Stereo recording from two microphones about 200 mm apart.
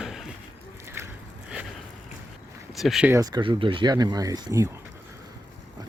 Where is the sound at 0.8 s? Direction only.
10° right (ahead or behind).